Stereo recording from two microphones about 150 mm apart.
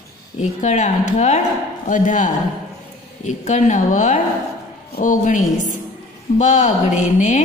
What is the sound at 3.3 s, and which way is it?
A woman's voice, 55° left (ahead or behind).